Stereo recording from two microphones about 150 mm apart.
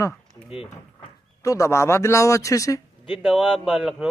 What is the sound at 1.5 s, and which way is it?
A man's voice, 20° left (ahead or behind).